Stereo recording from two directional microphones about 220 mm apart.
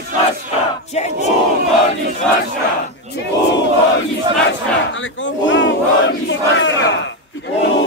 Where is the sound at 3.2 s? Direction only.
50° left (ahead or behind).